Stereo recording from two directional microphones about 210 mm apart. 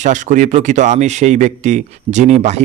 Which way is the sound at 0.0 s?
35° right (ahead or behind).